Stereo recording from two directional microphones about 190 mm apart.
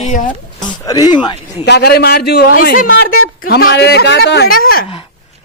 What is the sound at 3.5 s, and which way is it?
Speech, 55° left (ahead or behind).